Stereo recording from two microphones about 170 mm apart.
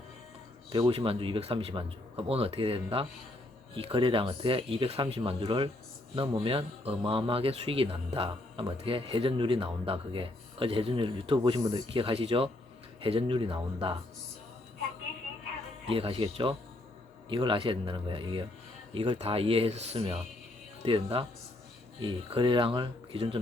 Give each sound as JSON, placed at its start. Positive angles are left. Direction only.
{"t": 0.7, "sound": "a man's voice", "side_deg": -30}
{"t": 15.9, "sound": "a man's voice", "side_deg": -30}